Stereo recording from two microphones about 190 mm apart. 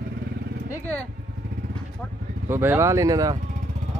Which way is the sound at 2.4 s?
10° right (ahead or behind).